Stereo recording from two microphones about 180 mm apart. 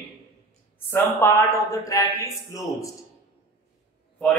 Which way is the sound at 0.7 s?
10° left (ahead or behind).